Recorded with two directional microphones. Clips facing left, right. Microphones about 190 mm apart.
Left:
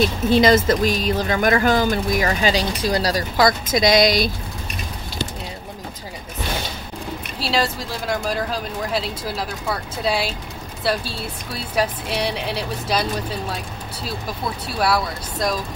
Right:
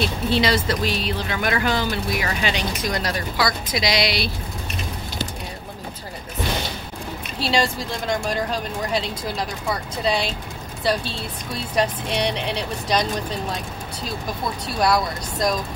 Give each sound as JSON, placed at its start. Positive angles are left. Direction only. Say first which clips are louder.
{"t": 0.0, "sound": "speech", "louder": "left 5 dB", "side_deg": 45}
{"t": 3.3, "sound": "speech", "louder": "left 7 dB", "side_deg": 45}
{"t": 7.3, "sound": "speech", "louder": "right 1 dB", "side_deg": 0}
{"t": 14.8, "sound": "speech", "louder": "right 1 dB", "side_deg": 5}